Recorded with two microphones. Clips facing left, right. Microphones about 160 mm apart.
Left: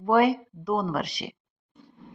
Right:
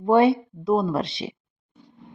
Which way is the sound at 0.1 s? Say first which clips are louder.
Right 4 dB; 25° right (ahead or behind).